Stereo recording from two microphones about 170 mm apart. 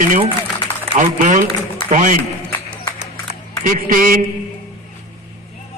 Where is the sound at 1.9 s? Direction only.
50° right (ahead or behind).